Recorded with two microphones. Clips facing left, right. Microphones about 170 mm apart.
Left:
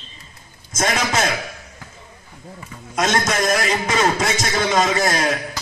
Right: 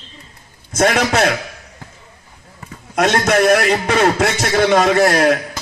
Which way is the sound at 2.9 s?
65° right (ahead or behind).